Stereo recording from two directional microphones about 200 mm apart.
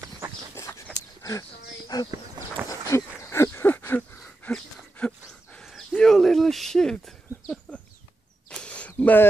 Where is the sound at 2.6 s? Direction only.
15° left (ahead or behind).